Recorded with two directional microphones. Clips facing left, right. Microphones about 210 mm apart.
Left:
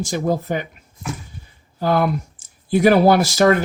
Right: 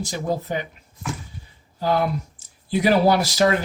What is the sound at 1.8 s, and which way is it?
Speech, 55° left (ahead or behind).